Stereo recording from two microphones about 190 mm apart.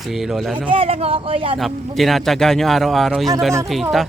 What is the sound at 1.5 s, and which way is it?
Speech, centre (ahead or behind).